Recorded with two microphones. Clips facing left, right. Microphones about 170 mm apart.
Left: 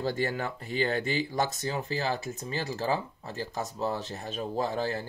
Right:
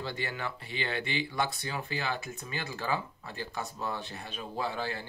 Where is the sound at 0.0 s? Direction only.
45° left (ahead or behind).